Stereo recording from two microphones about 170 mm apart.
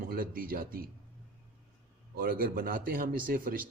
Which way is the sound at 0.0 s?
55° right (ahead or behind).